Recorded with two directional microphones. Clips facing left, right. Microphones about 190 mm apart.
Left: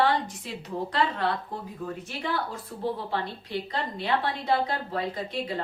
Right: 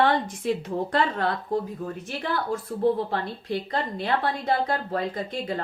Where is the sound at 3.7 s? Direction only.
50° right (ahead or behind).